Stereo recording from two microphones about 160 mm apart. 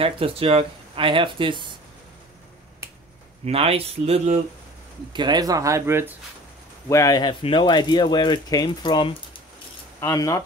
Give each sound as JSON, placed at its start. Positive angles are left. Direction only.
{"t": 0.0, "sound": "speech", "side_deg": -35}
{"t": 3.4, "sound": "speech", "side_deg": -35}
{"t": 5.1, "sound": "speech", "side_deg": -25}
{"t": 6.9, "sound": "speech", "side_deg": 20}
{"t": 9.9, "sound": "speech", "side_deg": 20}